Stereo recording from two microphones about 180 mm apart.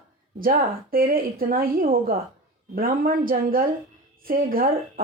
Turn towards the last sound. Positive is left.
turn(degrees=-55)  # may be behind; listen again after turning